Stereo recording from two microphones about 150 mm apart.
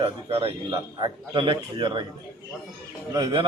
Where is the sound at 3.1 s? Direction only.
30° right (ahead or behind).